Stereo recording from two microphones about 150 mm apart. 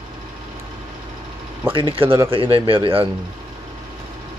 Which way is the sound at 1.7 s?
35° right (ahead or behind).